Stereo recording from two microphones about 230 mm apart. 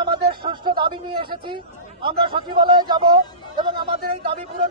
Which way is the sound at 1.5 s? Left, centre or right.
Right.